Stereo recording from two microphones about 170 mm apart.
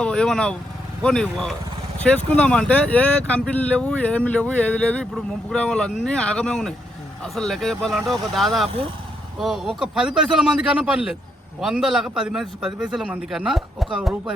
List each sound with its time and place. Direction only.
0.0 s a man's voice: 5° left (ahead or behind)